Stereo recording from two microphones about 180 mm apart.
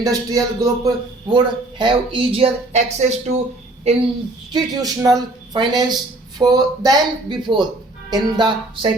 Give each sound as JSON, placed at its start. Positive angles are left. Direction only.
{"t": 0.0, "sound": "a man's voice", "side_deg": -20}
{"t": 4.5, "sound": "a man's voice", "side_deg": -20}